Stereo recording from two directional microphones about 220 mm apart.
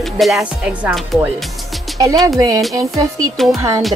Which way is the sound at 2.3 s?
15° right (ahead or behind).